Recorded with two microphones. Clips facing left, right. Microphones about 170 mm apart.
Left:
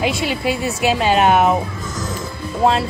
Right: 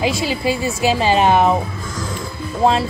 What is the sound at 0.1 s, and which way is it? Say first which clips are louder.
Speech: even; 60° left (ahead or behind).